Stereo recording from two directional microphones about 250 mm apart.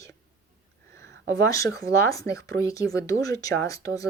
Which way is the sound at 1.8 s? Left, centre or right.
Centre.